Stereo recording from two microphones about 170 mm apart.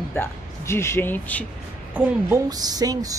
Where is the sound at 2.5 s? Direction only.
20° right (ahead or behind).